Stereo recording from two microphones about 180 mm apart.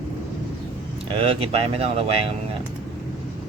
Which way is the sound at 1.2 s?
30° right (ahead or behind).